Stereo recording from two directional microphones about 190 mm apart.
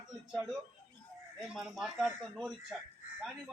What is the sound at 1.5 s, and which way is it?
A man's voice, 5° right (ahead or behind).